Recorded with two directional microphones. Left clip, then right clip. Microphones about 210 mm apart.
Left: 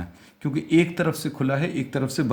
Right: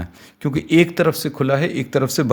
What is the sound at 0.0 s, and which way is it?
Speech, 45° right (ahead or behind).